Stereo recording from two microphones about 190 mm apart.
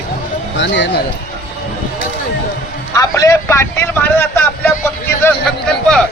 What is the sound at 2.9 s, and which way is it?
A man's voice, 15° left (ahead or behind).